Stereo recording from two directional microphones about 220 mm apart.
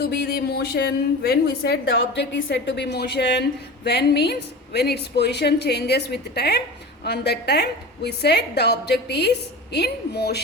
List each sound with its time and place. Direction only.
0.0 s a woman's voice: 45° left (ahead or behind)